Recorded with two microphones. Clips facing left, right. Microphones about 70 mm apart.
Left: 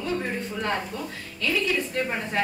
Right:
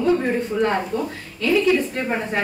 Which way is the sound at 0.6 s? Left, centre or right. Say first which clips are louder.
Right 7 dB; right.